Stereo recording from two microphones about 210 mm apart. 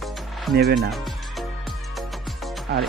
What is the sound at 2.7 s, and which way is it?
Speech, 50° right (ahead or behind).